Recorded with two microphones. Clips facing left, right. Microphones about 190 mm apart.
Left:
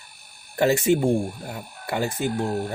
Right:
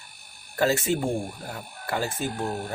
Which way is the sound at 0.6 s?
15° left (ahead or behind).